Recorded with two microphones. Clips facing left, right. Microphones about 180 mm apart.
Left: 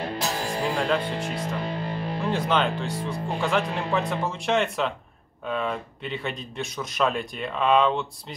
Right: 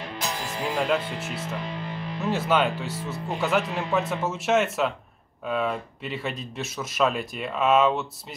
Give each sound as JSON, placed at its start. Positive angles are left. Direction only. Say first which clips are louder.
{"t": 0.0, "sound": "music", "louder": "left 4 dB", "side_deg": 35}
{"t": 0.7, "sound": "speech", "louder": "right 2 dB", "side_deg": -5}
{"t": 1.2, "sound": "speech", "louder": "left 3 dB", "side_deg": 50}
{"t": 1.6, "sound": "music", "louder": "left 4 dB", "side_deg": 35}
{"t": 2.2, "sound": "speech", "louder": "right 1 dB", "side_deg": -5}